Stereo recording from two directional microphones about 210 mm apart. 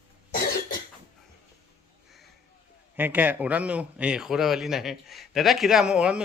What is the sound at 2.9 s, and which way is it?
A man's voice, 10° right (ahead or behind).